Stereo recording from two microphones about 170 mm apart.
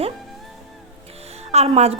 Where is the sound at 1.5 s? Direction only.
40° right (ahead or behind).